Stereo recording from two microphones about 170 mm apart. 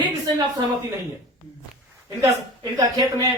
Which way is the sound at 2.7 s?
20° right (ahead or behind).